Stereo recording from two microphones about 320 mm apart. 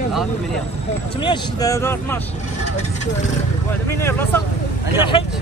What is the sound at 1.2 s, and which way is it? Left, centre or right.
Speech, centre.